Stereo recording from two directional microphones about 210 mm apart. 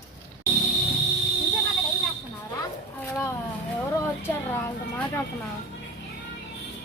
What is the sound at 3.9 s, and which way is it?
Speech, 10° left (ahead or behind).